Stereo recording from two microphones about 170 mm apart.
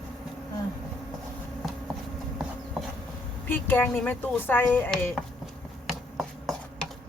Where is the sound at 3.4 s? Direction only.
10° left (ahead or behind).